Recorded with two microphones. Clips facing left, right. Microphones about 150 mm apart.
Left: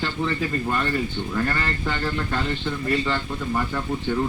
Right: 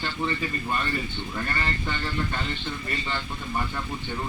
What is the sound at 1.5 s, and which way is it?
Speech, 70° left (ahead or behind).